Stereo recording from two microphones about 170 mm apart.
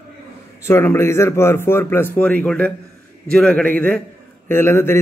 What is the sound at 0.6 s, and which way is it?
Speech, 15° left (ahead or behind).